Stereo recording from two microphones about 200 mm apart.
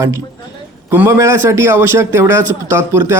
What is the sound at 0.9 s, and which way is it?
Speech, 10° right (ahead or behind).